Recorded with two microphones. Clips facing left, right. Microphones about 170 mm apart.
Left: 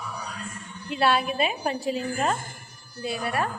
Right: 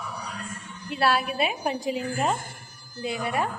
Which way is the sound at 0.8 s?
Centre (ahead or behind).